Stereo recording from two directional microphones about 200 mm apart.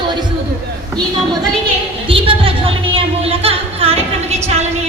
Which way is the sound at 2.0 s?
25° right (ahead or behind).